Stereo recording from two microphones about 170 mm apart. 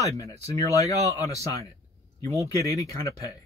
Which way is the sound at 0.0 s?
20° left (ahead or behind).